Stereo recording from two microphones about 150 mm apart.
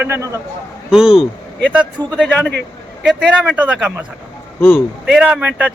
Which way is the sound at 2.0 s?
25° right (ahead or behind).